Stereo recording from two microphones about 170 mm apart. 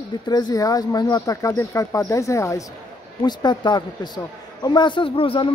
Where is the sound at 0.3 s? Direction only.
25° left (ahead or behind).